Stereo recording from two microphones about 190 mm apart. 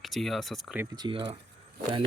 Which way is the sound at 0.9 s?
25° right (ahead or behind).